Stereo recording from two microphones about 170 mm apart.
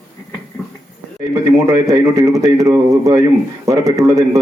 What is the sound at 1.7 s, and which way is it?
A man's voice, 20° right (ahead or behind).